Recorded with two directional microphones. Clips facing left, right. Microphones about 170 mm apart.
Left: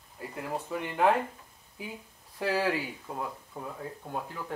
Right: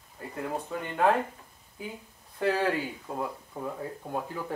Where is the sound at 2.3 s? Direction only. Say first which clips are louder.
Right 2 dB; 5° left (ahead or behind).